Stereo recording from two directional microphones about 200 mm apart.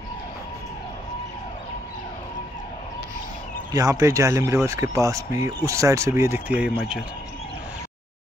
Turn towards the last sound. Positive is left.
turn(degrees=-5)  # may be behind; listen again after turning